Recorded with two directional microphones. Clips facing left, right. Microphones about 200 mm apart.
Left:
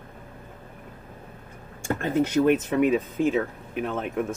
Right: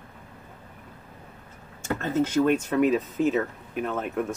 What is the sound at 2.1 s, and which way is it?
Speech, 5° left (ahead or behind).